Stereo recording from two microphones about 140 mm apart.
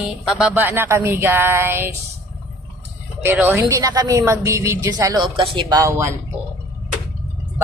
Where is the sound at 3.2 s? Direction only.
15° right (ahead or behind).